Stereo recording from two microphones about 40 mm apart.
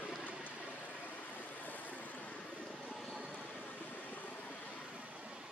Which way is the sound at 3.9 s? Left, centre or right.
Left.